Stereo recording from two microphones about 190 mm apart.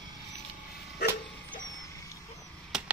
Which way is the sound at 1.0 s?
60° left (ahead or behind).